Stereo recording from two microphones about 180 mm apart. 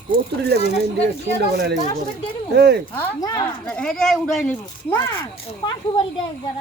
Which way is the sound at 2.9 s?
15° left (ahead or behind).